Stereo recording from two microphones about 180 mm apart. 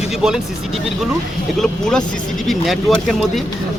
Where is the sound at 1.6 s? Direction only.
5° left (ahead or behind).